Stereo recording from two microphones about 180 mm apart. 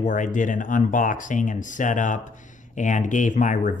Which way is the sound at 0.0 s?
45° left (ahead or behind).